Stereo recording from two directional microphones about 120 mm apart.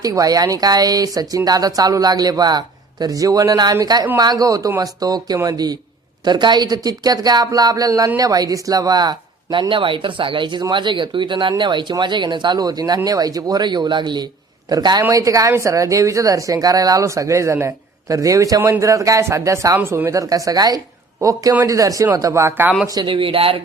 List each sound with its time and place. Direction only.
0.0 s speech: 30° right (ahead or behind)
23.0 s speech: 45° right (ahead or behind)